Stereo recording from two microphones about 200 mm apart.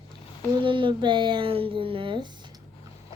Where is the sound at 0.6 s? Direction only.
25° right (ahead or behind).